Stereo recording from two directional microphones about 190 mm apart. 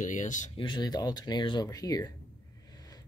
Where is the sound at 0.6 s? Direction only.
20° left (ahead or behind).